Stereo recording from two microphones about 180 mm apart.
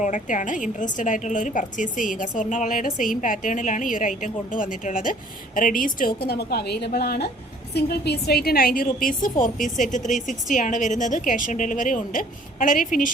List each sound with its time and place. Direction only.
0.0 s a woman's voice: 45° left (ahead or behind)
6.2 s a woman's voice: 60° left (ahead or behind)